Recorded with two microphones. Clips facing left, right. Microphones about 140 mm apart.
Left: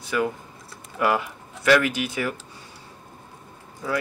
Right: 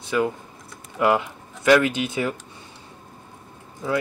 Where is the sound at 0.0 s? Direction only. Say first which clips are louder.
Right 2 dB; 25° right (ahead or behind).